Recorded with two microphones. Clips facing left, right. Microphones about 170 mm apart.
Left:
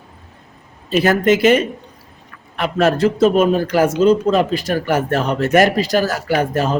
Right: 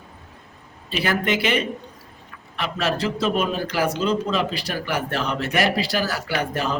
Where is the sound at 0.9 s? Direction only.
45° left (ahead or behind).